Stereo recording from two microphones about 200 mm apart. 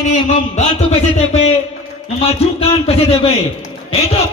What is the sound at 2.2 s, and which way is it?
A man's voice, 30° left (ahead or behind).